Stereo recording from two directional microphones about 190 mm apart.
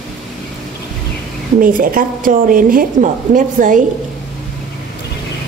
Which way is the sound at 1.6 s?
45° right (ahead or behind).